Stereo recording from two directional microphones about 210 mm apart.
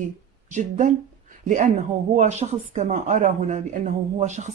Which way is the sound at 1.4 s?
35° right (ahead or behind).